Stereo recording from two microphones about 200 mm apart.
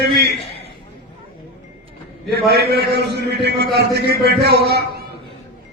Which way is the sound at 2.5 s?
55° right (ahead or behind).